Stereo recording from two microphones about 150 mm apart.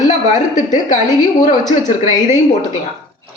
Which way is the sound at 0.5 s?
60° left (ahead or behind).